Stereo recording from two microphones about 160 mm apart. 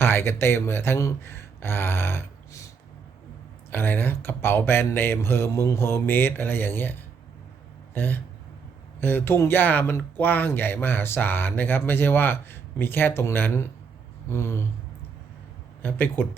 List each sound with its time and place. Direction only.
0.0 s speech: 15° left (ahead or behind)
3.7 s speech: 10° left (ahead or behind)
7.9 s speech: 10° left (ahead or behind)
15.8 s speech: 10° left (ahead or behind)